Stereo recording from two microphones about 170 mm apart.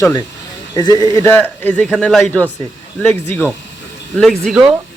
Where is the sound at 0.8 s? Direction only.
25° left (ahead or behind); by 4.7 s centre (ahead or behind).